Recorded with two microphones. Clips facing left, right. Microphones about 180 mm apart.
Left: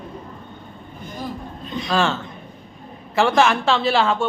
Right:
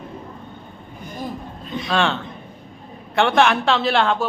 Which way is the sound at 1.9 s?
Centre (ahead or behind).